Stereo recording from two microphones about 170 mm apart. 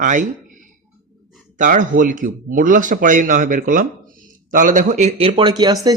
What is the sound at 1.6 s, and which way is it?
Speech, 50° right (ahead or behind).